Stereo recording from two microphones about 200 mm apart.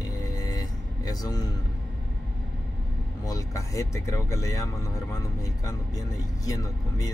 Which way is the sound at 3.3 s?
15° left (ahead or behind).